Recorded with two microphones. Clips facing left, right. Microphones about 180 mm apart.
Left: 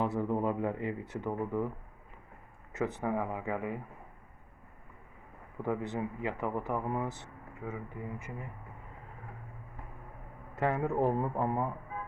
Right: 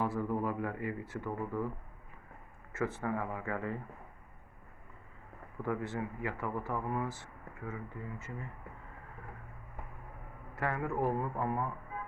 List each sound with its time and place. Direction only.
0.0 s speech: 20° left (ahead or behind)
2.7 s speech: 20° left (ahead or behind)
5.6 s speech: 20° left (ahead or behind)
10.5 s speech: 20° left (ahead or behind)